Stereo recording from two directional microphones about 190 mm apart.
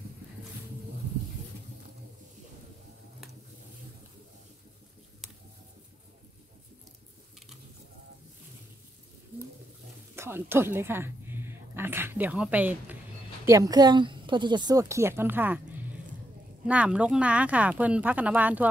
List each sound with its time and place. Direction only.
10.1 s a woman's voice: 15° right (ahead or behind)
16.6 s speech: 5° right (ahead or behind)